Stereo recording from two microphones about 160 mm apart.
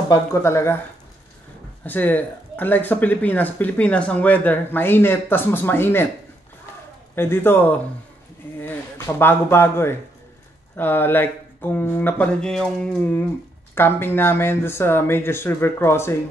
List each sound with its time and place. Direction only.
0.1 s speech: 15° left (ahead or behind)
1.9 s speech: 10° left (ahead or behind)
7.2 s speech: 15° left (ahead or behind)
8.5 s speech: 15° left (ahead or behind)